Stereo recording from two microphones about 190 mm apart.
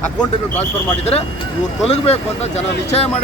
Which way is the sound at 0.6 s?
35° left (ahead or behind).